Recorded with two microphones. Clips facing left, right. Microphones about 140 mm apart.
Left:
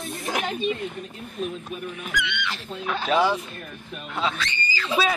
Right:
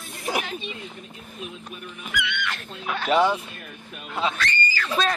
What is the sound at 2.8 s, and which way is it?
Speech, centre (ahead or behind).